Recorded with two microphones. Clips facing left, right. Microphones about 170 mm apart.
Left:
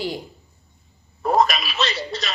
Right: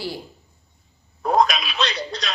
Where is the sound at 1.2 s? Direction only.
5° left (ahead or behind).